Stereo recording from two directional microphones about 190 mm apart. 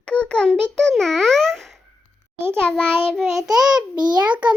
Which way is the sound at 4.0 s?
20° right (ahead or behind).